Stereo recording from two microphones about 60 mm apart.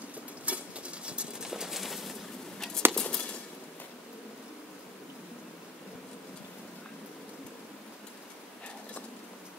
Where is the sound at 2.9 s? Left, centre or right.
Centre.